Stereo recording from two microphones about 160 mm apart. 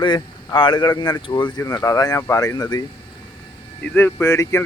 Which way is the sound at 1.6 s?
20° left (ahead or behind).